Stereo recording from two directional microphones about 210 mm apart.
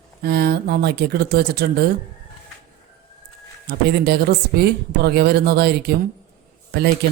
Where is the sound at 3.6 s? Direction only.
50° right (ahead or behind).